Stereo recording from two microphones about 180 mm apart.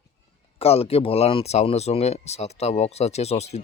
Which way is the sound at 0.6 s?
35° left (ahead or behind).